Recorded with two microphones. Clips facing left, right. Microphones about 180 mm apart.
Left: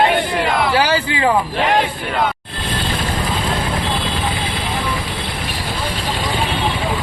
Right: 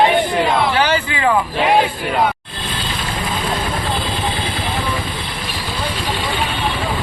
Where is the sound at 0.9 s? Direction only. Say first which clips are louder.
Left 1 dB; 30° left (ahead or behind).